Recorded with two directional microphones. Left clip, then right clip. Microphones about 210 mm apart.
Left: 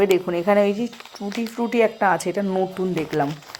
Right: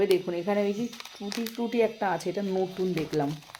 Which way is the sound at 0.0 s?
15° left (ahead or behind).